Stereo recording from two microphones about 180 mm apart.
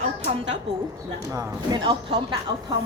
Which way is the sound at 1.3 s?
25° right (ahead or behind).